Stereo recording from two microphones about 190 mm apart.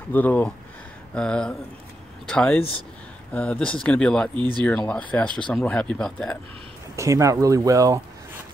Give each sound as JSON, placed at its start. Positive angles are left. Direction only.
{"t": 0.1, "sound": "speech", "side_deg": 10}
{"t": 7.0, "sound": "speech", "side_deg": -15}